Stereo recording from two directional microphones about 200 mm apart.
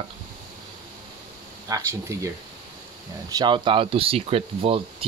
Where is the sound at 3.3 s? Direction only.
25° right (ahead or behind).